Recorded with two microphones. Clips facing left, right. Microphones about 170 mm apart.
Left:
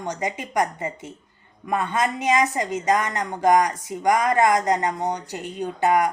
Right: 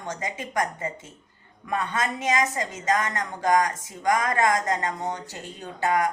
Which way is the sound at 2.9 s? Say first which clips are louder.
Left 1 dB; 20° left (ahead or behind).